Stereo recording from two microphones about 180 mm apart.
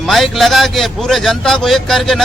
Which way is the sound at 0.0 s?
Centre (ahead or behind).